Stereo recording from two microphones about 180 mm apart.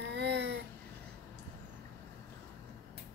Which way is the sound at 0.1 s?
70° right (ahead or behind).